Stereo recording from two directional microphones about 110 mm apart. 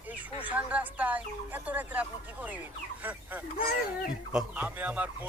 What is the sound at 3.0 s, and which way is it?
Speech, 15° right (ahead or behind).